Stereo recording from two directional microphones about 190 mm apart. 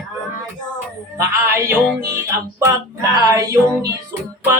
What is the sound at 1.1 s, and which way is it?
Music, 15° right (ahead or behind).